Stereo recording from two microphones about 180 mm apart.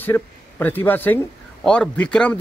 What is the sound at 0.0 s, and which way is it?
Speech, 10° left (ahead or behind).